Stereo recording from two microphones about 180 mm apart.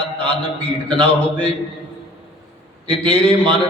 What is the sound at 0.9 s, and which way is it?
Speech, 5° left (ahead or behind).